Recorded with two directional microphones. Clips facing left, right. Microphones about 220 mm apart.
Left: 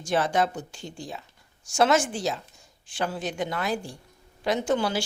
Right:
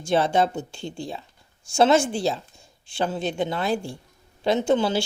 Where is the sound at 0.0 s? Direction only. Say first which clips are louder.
Right 4 dB; 25° right (ahead or behind).